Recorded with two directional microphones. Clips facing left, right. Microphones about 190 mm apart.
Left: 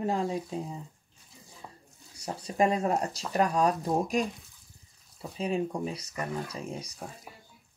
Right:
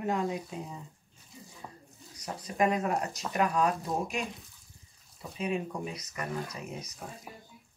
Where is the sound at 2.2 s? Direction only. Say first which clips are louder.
Left 2 dB; 30° left (ahead or behind).